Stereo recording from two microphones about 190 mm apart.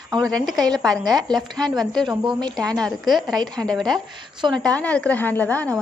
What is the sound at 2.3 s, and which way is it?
Speech, 20° right (ahead or behind).